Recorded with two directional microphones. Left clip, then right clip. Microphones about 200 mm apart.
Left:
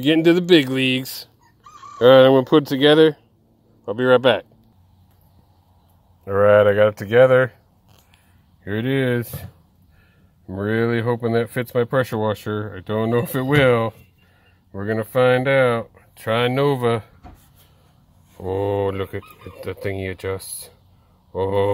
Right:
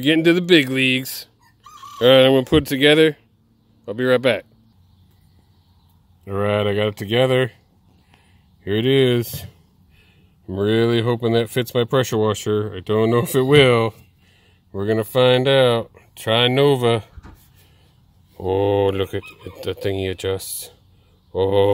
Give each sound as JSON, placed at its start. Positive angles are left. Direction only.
{"t": 0.0, "sound": "speech", "side_deg": -10}
{"t": 6.3, "sound": "speech", "side_deg": -5}
{"t": 8.6, "sound": "speech", "side_deg": -20}
{"t": 18.4, "sound": "speech", "side_deg": -20}